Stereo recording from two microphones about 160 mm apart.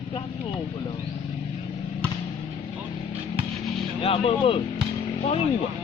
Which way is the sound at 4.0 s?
35° left (ahead or behind).